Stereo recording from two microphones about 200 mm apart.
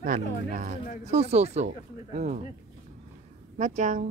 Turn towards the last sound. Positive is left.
turn(degrees=-40)  # may be behind; listen again after turning